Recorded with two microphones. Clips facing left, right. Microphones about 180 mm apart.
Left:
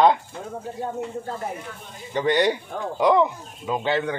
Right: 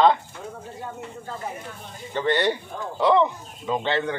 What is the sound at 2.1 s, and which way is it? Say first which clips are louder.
Speech: left 2 dB; 15° left (ahead or behind).